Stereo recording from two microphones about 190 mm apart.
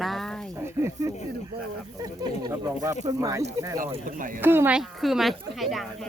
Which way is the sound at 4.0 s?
45° right (ahead or behind).